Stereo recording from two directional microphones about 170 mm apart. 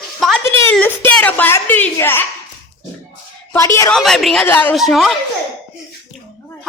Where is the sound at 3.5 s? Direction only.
15° left (ahead or behind).